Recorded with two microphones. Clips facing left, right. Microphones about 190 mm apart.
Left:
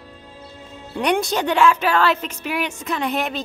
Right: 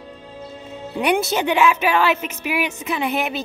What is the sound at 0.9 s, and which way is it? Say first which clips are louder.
Speech: right 1 dB; 5° right (ahead or behind).